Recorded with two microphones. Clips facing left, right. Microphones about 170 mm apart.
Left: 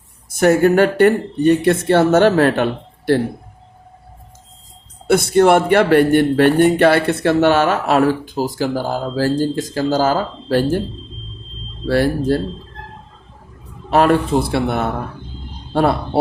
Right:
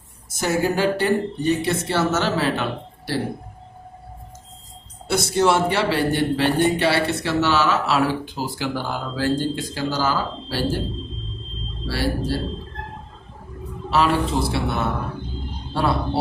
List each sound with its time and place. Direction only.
0.3 s speech: 60° left (ahead or behind)
5.0 s speech: 55° left (ahead or behind)
11.9 s speech: 50° left (ahead or behind)
13.9 s a man's voice: 50° left (ahead or behind)